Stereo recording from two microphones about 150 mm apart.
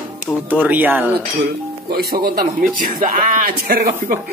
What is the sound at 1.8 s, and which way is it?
Speech, 90° right.